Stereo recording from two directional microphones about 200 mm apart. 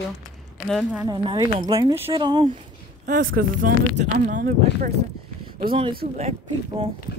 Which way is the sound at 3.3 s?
40° right (ahead or behind).